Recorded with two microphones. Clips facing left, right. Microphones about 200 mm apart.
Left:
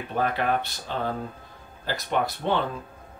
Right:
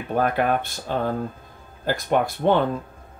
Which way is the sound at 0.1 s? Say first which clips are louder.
Right 4 dB; 50° right (ahead or behind).